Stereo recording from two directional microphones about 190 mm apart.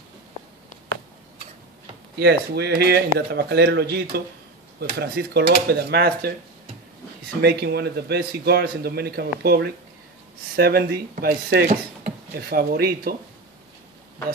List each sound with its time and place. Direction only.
2.1 s a man's voice: 60° right (ahead or behind)
7.4 s a man's voice: 60° right (ahead or behind)